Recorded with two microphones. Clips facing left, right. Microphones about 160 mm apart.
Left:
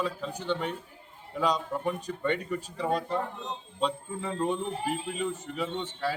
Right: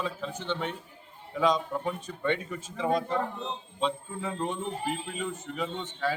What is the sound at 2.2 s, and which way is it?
Speech, 5° left (ahead or behind).